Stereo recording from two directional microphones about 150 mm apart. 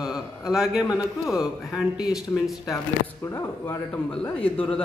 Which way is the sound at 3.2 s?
20° left (ahead or behind).